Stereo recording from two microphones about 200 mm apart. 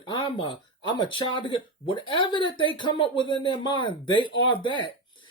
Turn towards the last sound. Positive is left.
turn(degrees=25)  # may be behind; listen again after turning